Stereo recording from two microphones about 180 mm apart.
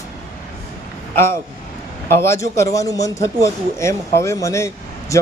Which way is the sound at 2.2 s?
15° left (ahead or behind).